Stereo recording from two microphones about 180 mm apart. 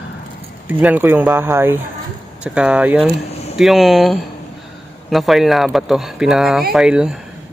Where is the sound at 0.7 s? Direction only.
10° right (ahead or behind).